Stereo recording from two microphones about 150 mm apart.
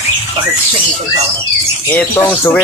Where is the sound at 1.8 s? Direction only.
10° left (ahead or behind).